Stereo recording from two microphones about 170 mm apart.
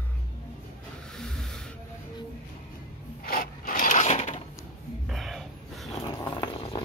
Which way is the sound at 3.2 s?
60° left (ahead or behind).